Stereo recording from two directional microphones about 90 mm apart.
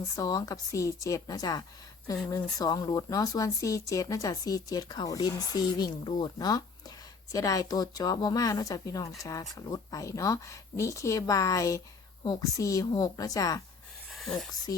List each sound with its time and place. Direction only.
0.2 s speech: 40° left (ahead or behind)
12.2 s speech: 50° left (ahead or behind)
12.5 s speech: 35° left (ahead or behind)
14.1 s a sound: centre (ahead or behind)